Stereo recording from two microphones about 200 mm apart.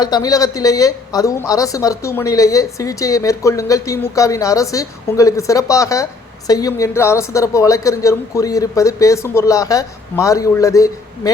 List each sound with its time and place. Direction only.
0.0 s a woman's voice: 20° left (ahead or behind)